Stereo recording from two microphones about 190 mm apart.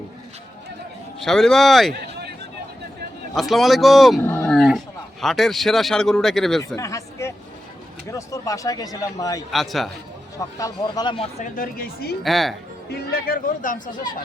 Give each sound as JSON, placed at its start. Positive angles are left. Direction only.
{"t": 1.2, "sound": "a man's voice", "side_deg": 0}
{"t": 3.3, "sound": "a man's voice", "side_deg": 0}
{"t": 4.2, "sound": "dog", "side_deg": 10}
{"t": 4.5, "sound": "a man's voice", "side_deg": 0}
{"t": 6.7, "sound": "a sound", "side_deg": 15}
{"t": 8.1, "sound": "speech", "side_deg": 15}
{"t": 9.5, "sound": "a man's voice", "side_deg": 0}
{"t": 10.3, "sound": "speech", "side_deg": 20}
{"t": 12.2, "sound": "a man's voice", "side_deg": 0}
{"t": 12.9, "sound": "speech", "side_deg": 55}